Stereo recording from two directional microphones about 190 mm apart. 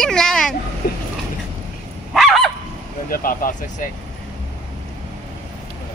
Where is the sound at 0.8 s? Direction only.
50° left (ahead or behind).